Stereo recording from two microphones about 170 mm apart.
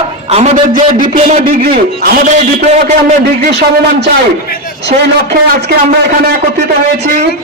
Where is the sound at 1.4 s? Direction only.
60° right (ahead or behind).